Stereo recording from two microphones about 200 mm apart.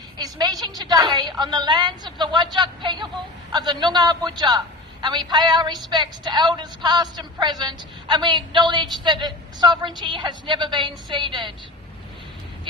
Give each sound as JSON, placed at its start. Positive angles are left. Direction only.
{"t": 0.2, "sound": "speech", "side_deg": -20}